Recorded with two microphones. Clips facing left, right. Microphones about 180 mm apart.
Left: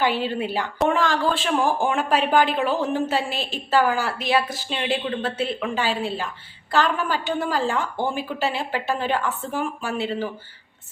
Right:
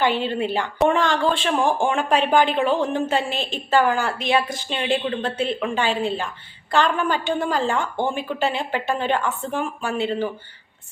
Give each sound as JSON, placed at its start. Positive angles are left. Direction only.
{"t": 0.0, "sound": "speech", "side_deg": 5}